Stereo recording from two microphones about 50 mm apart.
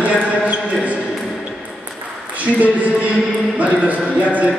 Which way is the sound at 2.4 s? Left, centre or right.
Right.